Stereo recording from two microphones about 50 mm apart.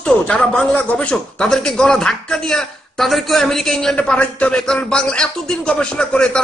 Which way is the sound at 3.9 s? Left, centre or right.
Left.